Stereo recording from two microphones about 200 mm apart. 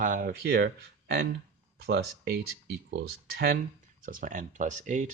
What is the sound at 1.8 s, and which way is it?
Speech, 55° right (ahead or behind).